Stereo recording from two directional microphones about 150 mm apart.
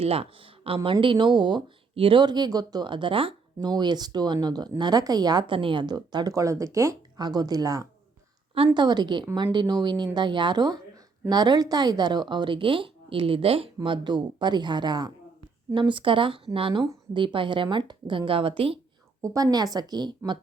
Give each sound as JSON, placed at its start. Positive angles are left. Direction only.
{"t": 0.0, "sound": "a woman's voice", "side_deg": -40}
{"t": 19.2, "sound": "speech", "side_deg": -25}